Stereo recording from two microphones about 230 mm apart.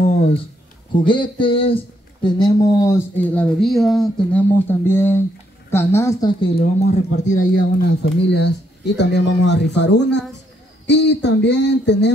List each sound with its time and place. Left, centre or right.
1.0 s speech: left
6.4 s speech: left
8.0 s speech: left